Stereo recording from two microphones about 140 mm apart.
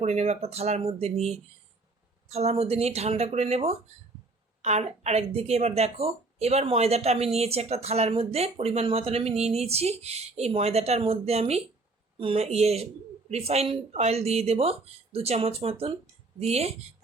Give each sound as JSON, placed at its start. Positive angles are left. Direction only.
{"t": 0.0, "sound": "speech", "side_deg": -50}